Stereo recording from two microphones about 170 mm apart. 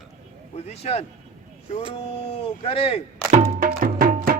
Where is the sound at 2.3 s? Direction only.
35° left (ahead or behind).